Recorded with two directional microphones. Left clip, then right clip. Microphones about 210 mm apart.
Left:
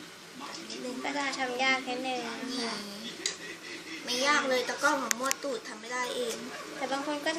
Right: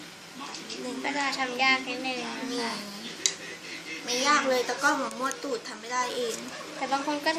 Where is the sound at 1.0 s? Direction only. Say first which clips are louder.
Right 3 dB; centre (ahead or behind).